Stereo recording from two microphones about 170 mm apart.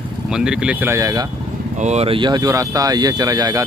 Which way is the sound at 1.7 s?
40° right (ahead or behind).